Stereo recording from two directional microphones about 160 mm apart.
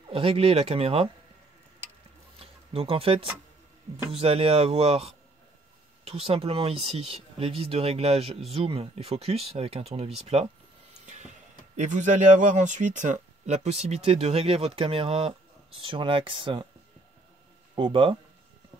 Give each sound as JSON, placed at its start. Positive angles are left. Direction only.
{"t": 0.1, "sound": "speech", "side_deg": -35}
{"t": 2.3, "sound": "a sound", "side_deg": -35}
{"t": 4.1, "sound": "speech", "side_deg": -35}
{"t": 11.1, "sound": "speech", "side_deg": -50}
{"t": 17.7, "sound": "speech", "side_deg": -30}